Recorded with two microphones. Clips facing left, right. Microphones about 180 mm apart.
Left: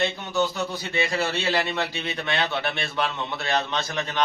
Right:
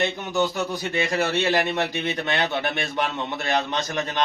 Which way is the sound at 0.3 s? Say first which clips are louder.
Right 1 dB; 15° right (ahead or behind).